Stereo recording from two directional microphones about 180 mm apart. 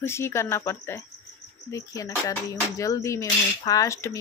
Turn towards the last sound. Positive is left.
turn(degrees=15)  # may be behind; listen again after turning